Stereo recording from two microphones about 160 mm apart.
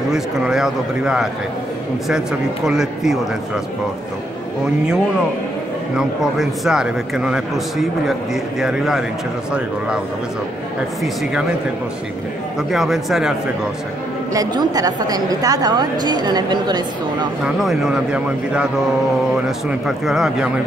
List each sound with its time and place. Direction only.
0.1 s a man's voice: 5° right (ahead or behind)
5.9 s a man's voice: centre (ahead or behind)
12.7 s a man's voice: centre (ahead or behind)
14.3 s a woman's voice: 25° right (ahead or behind)
17.6 s a man's voice: centre (ahead or behind)
20.1 s a man's voice: centre (ahead or behind)